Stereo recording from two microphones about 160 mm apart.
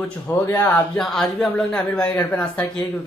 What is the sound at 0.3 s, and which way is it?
Speech, 10° left (ahead or behind).